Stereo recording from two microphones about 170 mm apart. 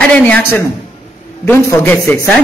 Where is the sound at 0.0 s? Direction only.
5° left (ahead or behind).